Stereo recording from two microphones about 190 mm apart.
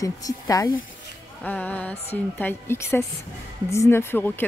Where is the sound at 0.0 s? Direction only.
20° left (ahead or behind).